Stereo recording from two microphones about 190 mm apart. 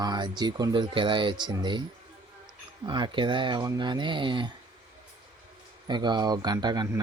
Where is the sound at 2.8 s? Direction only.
25° right (ahead or behind).